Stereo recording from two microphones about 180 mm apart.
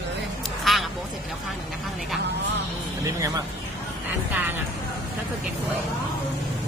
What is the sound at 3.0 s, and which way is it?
Speech, 20° right (ahead or behind).